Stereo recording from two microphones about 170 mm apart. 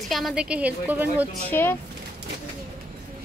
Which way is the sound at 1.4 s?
10° left (ahead or behind).